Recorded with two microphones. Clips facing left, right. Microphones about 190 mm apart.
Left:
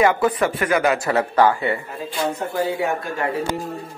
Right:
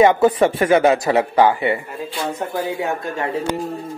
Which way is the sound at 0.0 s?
25° right (ahead or behind).